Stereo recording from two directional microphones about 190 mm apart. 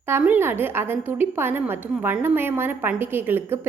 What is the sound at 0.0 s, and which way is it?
A woman's voice, 10° right (ahead or behind).